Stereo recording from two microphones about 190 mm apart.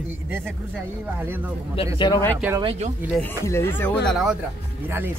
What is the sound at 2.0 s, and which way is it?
Speech, 15° left (ahead or behind).